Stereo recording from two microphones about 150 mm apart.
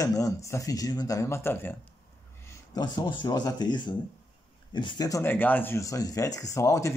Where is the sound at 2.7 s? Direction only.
30° left (ahead or behind).